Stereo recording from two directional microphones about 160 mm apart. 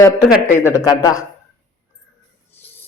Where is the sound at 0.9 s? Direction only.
25° left (ahead or behind).